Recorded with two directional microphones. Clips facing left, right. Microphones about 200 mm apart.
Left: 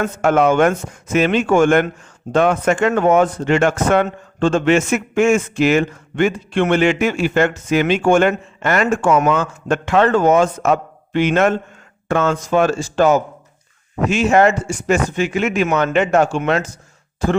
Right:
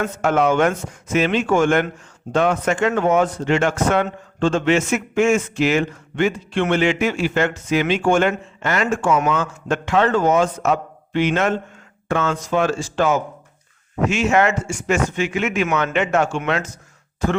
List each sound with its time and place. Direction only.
0.0 s speech: 50° left (ahead or behind); by 17.4 s 30° left (ahead or behind)